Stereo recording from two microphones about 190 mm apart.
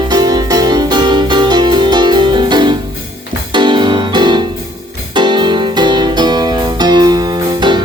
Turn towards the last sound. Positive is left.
turn(degrees=-20)  # may be behind; listen again after turning